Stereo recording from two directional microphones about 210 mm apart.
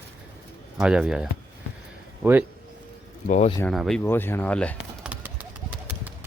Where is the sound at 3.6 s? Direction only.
Centre (ahead or behind).